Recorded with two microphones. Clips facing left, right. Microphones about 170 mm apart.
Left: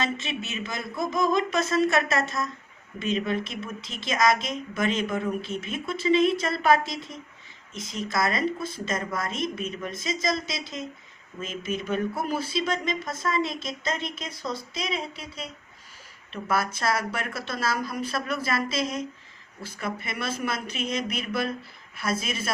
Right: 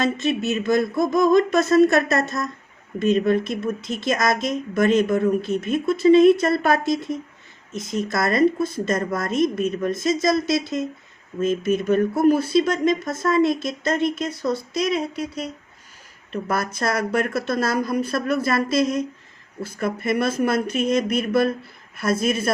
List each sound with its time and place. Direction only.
0.0 s a woman's voice: 45° right (ahead or behind)
10.0 s a woman's voice: 55° right (ahead or behind)
16.3 s a woman's voice: 45° right (ahead or behind)